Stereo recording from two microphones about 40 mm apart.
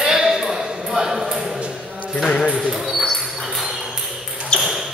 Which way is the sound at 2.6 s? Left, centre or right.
Centre.